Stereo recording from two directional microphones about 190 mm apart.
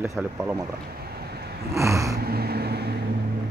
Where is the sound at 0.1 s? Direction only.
10° right (ahead or behind).